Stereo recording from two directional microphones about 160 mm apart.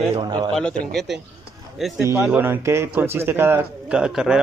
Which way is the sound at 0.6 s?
5° left (ahead or behind).